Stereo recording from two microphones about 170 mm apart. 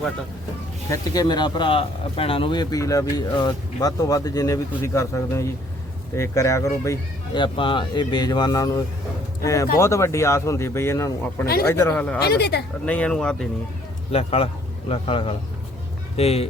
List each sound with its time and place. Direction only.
0.9 s speech: 20° left (ahead or behind)
7.4 s speech: 30° left (ahead or behind); by 12.2 s 10° left (ahead or behind)
12.2 s speech: 70° left (ahead or behind)
12.8 s speech: 5° left (ahead or behind)
14.1 s a man's voice: 35° left (ahead or behind)